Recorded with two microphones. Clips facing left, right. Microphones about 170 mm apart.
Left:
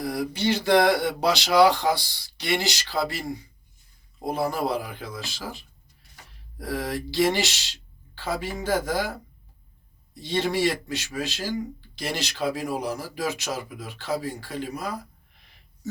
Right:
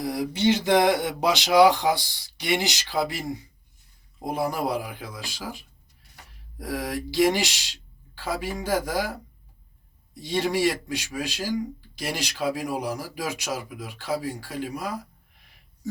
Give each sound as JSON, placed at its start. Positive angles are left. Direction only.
{"t": 0.0, "sound": "speech", "side_deg": -20}
{"t": 10.2, "sound": "speech", "side_deg": -10}